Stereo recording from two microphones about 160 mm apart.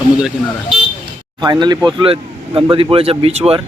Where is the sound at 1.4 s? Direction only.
25° right (ahead or behind).